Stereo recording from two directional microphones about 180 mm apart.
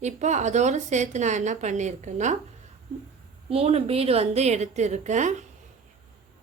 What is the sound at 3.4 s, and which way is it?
A woman's voice, 35° right (ahead or behind).